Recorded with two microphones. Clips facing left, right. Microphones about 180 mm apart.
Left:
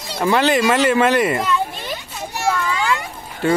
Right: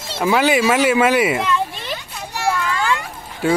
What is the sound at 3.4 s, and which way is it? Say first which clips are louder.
Speech: even; 10° right (ahead or behind).